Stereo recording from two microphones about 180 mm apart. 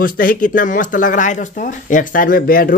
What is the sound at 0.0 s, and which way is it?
Speech, 50° left (ahead or behind).